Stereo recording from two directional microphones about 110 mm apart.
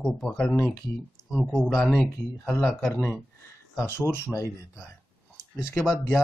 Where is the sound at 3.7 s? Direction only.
20° left (ahead or behind).